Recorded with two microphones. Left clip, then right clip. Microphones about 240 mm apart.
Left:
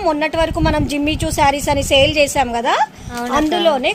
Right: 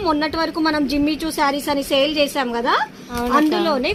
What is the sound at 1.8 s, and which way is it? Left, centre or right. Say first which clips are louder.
Speech: left 5 dB; left.